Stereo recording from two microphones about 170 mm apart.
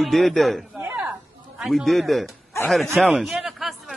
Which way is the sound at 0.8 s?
10° right (ahead or behind).